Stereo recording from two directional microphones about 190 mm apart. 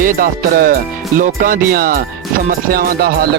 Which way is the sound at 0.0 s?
50° right (ahead or behind).